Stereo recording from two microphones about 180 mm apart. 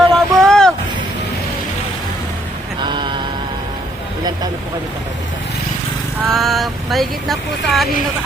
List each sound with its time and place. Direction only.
0.1 s a sound: 5° left (ahead or behind)
2.8 s mantra: 25° right (ahead or behind)
6.2 s speech: centre (ahead or behind)